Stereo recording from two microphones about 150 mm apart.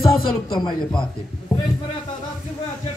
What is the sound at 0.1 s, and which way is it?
Music, centre (ahead or behind).